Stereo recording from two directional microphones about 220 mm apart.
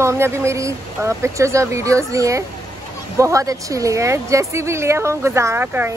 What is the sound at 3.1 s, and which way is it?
Speech, 15° right (ahead or behind).